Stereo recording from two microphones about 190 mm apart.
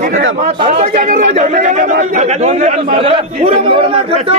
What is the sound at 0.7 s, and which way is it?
A man's voice, 45° right (ahead or behind).